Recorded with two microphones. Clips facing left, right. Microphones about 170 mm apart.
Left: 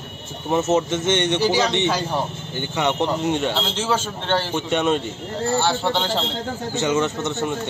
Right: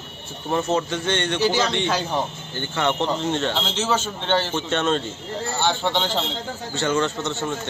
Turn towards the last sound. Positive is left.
turn(degrees=15)  # may be behind; listen again after turning